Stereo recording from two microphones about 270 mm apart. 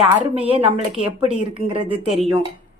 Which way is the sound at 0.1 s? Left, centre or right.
Centre.